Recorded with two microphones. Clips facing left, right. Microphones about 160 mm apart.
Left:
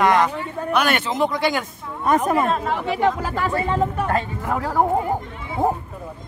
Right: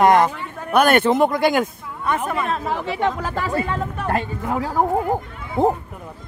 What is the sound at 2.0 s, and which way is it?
Speech, 40° left (ahead or behind).